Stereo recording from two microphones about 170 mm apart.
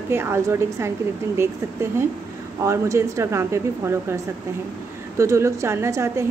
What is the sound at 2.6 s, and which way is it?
A woman's voice, 15° right (ahead or behind).